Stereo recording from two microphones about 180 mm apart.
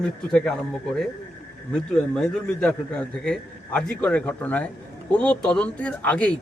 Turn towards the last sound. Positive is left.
turn(degrees=5)  # may be behind; listen again after turning